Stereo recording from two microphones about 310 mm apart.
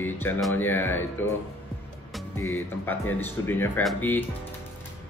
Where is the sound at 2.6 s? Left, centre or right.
Centre.